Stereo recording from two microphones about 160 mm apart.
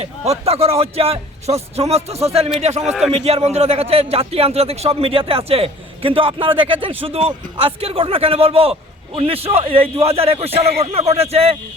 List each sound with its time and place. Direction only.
0.0 s a man's voice: 40° right (ahead or behind)
2.8 s a man's voice: centre (ahead or behind)
3.1 s speech: 40° right (ahead or behind)